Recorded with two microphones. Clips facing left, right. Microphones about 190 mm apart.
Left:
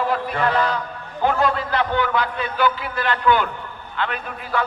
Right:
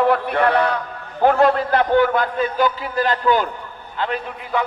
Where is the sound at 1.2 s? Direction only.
50° right (ahead or behind).